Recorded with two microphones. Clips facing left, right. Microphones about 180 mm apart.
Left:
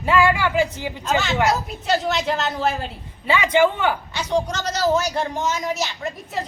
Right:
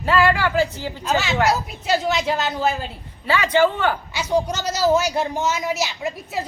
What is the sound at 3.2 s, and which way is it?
Speech, 20° left (ahead or behind).